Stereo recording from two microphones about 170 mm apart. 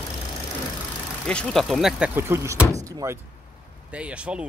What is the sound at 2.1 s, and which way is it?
Speech, 15° right (ahead or behind).